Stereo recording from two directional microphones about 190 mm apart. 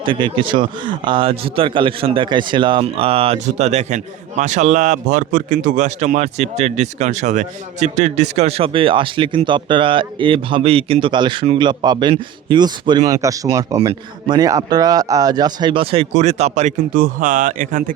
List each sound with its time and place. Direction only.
0.0 s a man's voice: 25° right (ahead or behind); by 17.9 s 45° right (ahead or behind)